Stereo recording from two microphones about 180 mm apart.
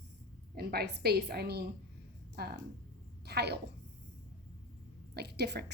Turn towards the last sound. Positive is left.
turn(degrees=-70)  # may be behind; listen again after turning